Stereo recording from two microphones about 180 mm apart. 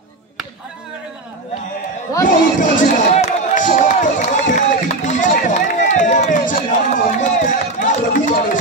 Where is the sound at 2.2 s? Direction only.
45° left (ahead or behind).